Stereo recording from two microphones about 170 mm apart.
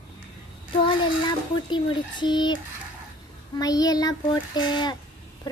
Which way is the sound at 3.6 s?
20° left (ahead or behind).